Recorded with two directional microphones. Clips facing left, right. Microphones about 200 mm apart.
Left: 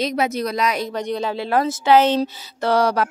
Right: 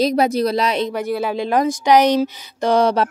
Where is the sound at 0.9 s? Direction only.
5° right (ahead or behind).